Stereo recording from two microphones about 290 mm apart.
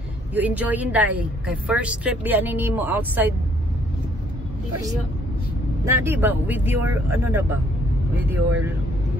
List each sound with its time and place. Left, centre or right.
0.3 s a woman's voice: centre
5.9 s speech: centre